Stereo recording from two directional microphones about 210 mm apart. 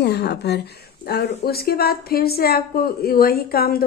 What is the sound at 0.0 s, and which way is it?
A woman's voice, 50° left (ahead or behind).